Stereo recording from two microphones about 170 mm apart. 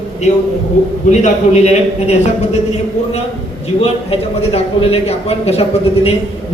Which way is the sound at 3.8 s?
35° left (ahead or behind).